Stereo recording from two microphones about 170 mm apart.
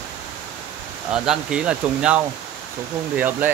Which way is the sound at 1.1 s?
5° right (ahead or behind).